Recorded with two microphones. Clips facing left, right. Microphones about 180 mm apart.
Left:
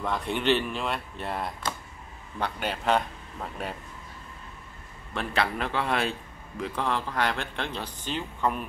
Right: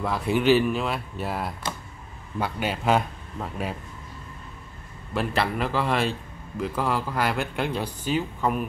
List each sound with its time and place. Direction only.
0.0 s speech: 5° right (ahead or behind)
5.1 s speech: 5° right (ahead or behind)